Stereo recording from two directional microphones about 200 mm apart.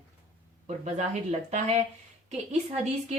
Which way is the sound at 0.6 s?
35° right (ahead or behind).